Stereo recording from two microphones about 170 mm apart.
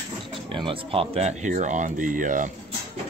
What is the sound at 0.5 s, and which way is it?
Speech, 30° right (ahead or behind).